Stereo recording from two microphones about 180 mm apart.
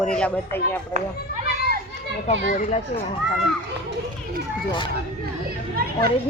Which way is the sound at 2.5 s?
45° left (ahead or behind).